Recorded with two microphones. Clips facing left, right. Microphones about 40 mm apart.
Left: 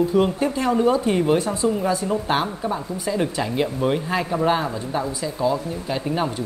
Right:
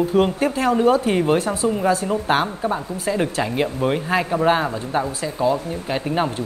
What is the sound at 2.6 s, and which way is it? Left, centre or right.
Speech, right.